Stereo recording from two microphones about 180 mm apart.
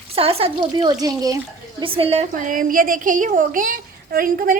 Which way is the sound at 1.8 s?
30° right (ahead or behind).